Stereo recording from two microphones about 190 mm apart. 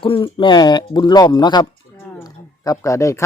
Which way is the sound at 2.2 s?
15° left (ahead or behind).